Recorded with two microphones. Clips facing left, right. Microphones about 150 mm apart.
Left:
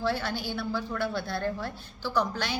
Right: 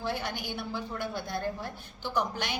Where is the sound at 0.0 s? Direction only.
20° right (ahead or behind).